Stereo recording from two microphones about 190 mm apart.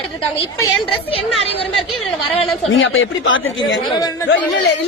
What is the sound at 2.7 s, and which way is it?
Speech, 90° left.